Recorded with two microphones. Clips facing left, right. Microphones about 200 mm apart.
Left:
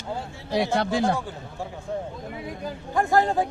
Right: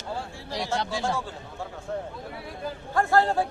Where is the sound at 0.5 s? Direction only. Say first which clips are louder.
Left 6 dB; 60° left (ahead or behind).